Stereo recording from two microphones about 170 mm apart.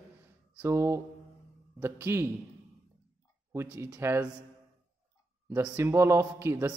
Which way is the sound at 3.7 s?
15° right (ahead or behind).